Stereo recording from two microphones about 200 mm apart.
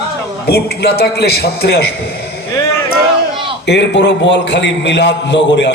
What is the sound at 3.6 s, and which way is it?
A man's voice, 60° left (ahead or behind).